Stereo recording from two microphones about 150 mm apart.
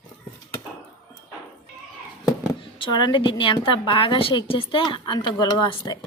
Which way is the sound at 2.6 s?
30° left (ahead or behind).